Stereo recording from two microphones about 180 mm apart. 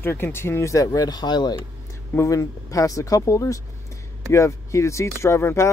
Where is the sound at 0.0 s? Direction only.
10° left (ahead or behind).